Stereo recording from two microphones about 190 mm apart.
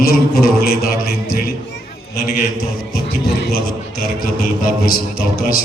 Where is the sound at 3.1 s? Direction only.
50° left (ahead or behind).